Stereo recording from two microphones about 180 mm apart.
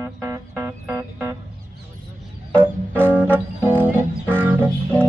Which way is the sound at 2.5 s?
10° right (ahead or behind).